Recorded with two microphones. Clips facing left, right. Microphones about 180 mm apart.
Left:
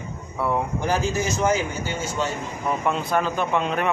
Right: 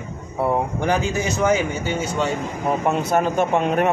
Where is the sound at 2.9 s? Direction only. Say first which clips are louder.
Right 4 dB; 50° right (ahead or behind).